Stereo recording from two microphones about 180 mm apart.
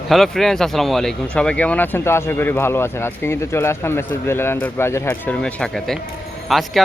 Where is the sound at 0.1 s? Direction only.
Centre (ahead or behind).